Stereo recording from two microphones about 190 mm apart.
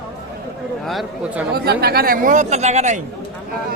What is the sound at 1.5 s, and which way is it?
Speech, 55° right (ahead or behind).